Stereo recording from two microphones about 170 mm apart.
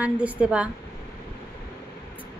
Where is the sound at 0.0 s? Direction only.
10° right (ahead or behind).